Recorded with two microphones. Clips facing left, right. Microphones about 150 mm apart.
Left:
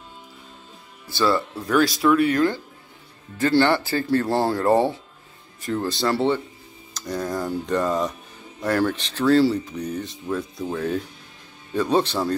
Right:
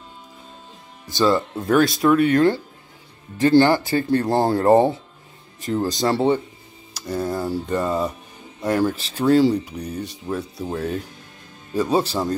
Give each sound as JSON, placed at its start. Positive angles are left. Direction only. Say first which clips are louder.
{"t": 1.1, "sound": "speech", "louder": "right 3 dB", "side_deg": -20}